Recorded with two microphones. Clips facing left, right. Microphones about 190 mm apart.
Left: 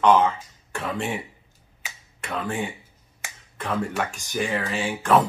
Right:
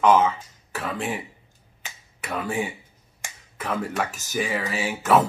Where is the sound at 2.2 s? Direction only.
10° right (ahead or behind).